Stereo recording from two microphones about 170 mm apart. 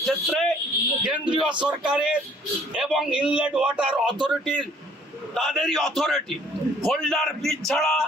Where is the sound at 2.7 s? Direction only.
5° right (ahead or behind).